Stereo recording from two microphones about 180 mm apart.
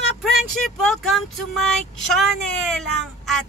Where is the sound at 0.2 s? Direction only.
Centre (ahead or behind).